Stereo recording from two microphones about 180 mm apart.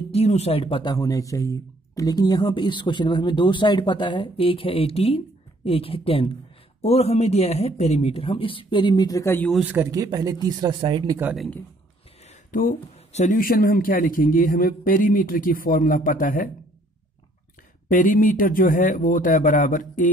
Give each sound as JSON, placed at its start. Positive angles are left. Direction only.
{"t": 0.1, "sound": "a man's voice", "side_deg": 35}
{"t": 9.5, "sound": "speech", "side_deg": -10}
{"t": 11.3, "sound": "speech", "side_deg": 0}
{"t": 12.3, "sound": "speech", "side_deg": 50}
{"t": 17.8, "sound": "speech", "side_deg": 45}